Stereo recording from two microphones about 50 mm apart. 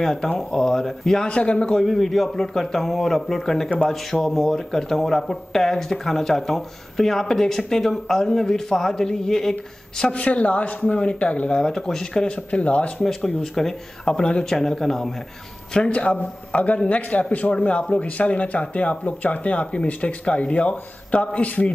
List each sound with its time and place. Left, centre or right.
0.0 s speech: centre
1.2 s a man's voice: left
1.7 s a man's voice: centre
10.1 s a man's voice: left
12.4 s a man's voice: left
13.0 s speech: centre
14.0 s speech: centre
15.7 s a man's voice: left